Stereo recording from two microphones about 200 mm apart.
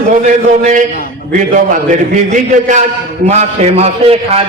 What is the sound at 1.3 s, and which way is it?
A man's voice, 40° right (ahead or behind).